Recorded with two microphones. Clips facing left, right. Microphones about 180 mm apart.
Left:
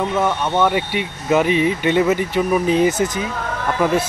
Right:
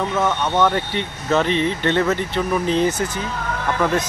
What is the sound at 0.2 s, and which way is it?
Speech, 10° left (ahead or behind).